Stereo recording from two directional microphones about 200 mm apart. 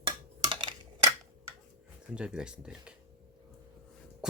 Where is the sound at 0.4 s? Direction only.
25° right (ahead or behind).